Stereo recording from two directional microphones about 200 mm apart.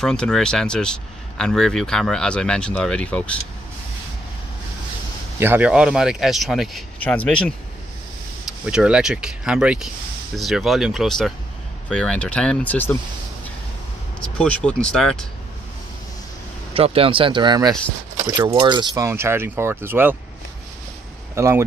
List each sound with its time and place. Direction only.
0.0 s speech: 5° left (ahead or behind)
5.4 s speech: 10° right (ahead or behind)
8.6 s speech: 5° right (ahead or behind)
14.2 s speech: 5° left (ahead or behind)
16.7 s speech: 30° right (ahead or behind); by 20.2 s 10° right (ahead or behind)
21.4 s speech: 15° right (ahead or behind)